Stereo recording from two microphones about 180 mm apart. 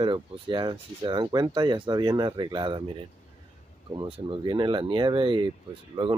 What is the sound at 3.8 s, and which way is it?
Speech, 30° right (ahead or behind).